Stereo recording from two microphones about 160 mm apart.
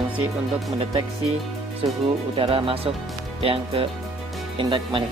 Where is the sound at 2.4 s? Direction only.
35° right (ahead or behind).